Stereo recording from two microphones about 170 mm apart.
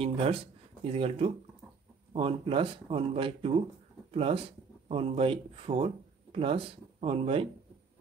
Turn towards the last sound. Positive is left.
turn(degrees=-35)  # may be behind; listen again after turning